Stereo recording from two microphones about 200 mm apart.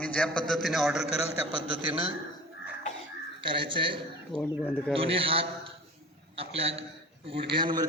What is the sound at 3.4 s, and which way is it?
Speech, 25° right (ahead or behind).